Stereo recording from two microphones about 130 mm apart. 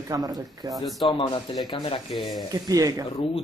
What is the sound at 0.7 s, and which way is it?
Speech, centre (ahead or behind).